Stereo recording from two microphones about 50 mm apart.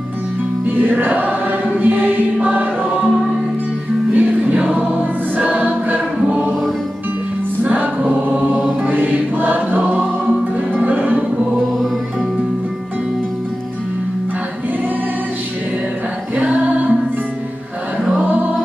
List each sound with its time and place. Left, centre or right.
0.7 s music: right
1.8 s choir: right
4.1 s choir: right
7.6 s choir: right
8.8 s music: right
18.2 s music: right